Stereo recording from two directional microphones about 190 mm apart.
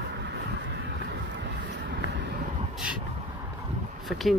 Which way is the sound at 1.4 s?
70° right (ahead or behind).